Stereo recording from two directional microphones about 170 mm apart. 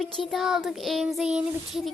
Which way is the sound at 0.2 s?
Centre (ahead or behind).